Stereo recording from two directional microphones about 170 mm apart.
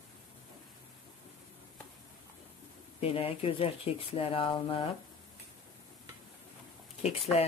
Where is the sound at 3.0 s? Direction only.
35° left (ahead or behind).